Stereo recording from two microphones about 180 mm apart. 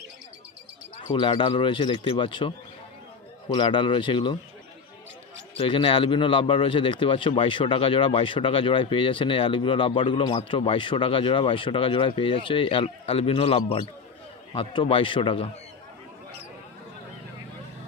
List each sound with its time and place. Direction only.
1.1 s a man's voice: 30° left (ahead or behind)
5.6 s a man's voice: 30° left (ahead or behind)